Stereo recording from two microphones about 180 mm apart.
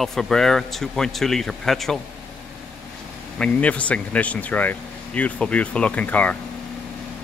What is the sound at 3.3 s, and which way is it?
Speech, 5° left (ahead or behind).